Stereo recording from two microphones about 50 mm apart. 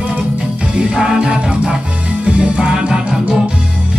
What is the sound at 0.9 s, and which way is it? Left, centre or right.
Music, centre.